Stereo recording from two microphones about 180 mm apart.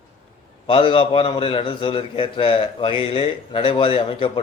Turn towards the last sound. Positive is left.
turn(degrees=30)  # may be behind; listen again after turning